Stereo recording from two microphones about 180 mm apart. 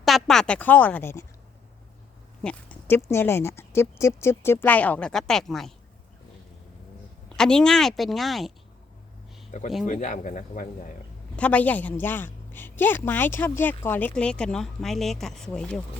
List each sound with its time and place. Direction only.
0.0 s speech: centre (ahead or behind)
2.4 s a woman's voice: 5° left (ahead or behind)
7.3 s a woman's voice: 5° left (ahead or behind)
9.5 s speech: 45° left (ahead or behind)
11.3 s a woman's voice: 10° left (ahead or behind)